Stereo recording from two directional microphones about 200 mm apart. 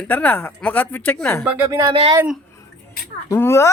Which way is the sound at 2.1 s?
5° right (ahead or behind).